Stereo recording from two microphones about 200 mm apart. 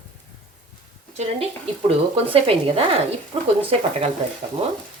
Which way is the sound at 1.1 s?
35° right (ahead or behind).